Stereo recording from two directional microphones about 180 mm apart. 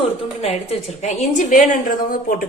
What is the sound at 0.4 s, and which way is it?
A woman's voice, 35° left (ahead or behind).